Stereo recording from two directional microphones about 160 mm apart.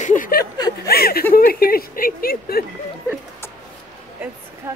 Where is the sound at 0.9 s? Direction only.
70° left (ahead or behind).